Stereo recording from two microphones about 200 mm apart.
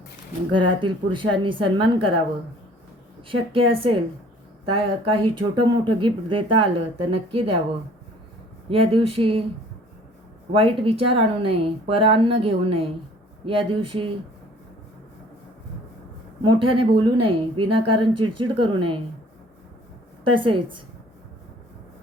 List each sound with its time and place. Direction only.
0.5 s a woman's voice: 25° right (ahead or behind)
3.2 s a woman's voice: 25° right (ahead or behind)
8.7 s a woman's voice: 25° right (ahead or behind)
10.5 s a woman's voice: 30° right (ahead or behind)
16.4 s a woman's voice: 25° right (ahead or behind)
20.2 s a woman's voice: 25° right (ahead or behind)